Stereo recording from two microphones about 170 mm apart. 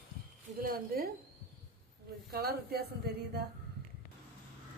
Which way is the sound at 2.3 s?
65° right (ahead or behind).